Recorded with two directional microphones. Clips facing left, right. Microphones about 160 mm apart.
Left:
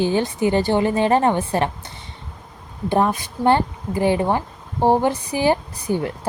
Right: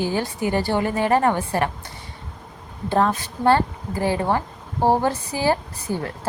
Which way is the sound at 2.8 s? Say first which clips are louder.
Left 1 dB; 15° left (ahead or behind).